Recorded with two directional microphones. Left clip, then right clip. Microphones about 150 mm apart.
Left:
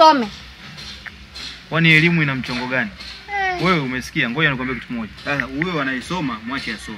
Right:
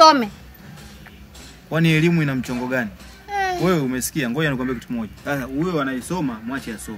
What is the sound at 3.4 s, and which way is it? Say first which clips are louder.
A child's voice: left 1 dB; 45° right (ahead or behind).